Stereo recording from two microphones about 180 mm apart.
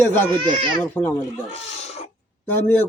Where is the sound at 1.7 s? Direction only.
35° left (ahead or behind).